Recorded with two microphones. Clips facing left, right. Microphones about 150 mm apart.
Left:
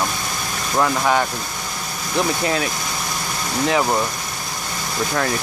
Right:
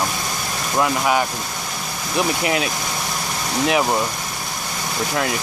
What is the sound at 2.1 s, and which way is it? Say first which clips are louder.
Speech: even; 15° right (ahead or behind).